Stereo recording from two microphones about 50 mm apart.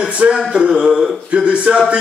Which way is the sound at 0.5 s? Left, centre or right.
Centre.